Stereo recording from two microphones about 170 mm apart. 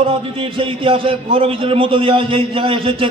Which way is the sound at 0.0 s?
35° right (ahead or behind).